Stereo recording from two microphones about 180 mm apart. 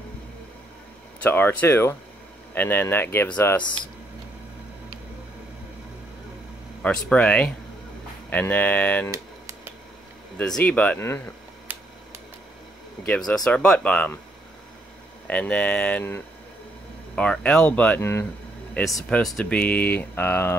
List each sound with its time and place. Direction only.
1.2 s speech: 10° left (ahead or behind)
6.8 s speech: 5° left (ahead or behind)
10.3 s speech: 5° left (ahead or behind)
13.0 s speech: 5° left (ahead or behind)
15.2 s speech: 5° left (ahead or behind)